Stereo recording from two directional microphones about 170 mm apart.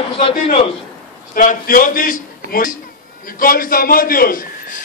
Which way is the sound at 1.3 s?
55° left (ahead or behind).